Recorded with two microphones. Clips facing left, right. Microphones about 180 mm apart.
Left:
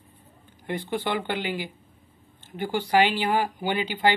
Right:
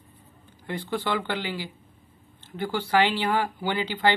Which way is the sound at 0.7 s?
20° left (ahead or behind).